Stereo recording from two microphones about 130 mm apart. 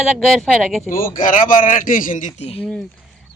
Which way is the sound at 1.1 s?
90° left.